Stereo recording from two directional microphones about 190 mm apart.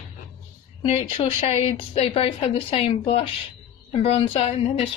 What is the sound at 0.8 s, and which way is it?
Speech, 30° left (ahead or behind).